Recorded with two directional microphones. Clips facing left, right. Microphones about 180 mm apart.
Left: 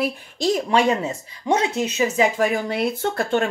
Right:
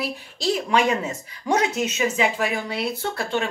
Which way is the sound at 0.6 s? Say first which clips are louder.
Left 2 dB; 30° left (ahead or behind).